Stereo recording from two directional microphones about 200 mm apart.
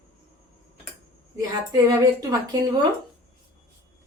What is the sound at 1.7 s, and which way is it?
Speech, 20° right (ahead or behind).